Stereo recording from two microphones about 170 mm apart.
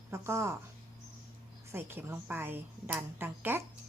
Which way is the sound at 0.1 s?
15° right (ahead or behind).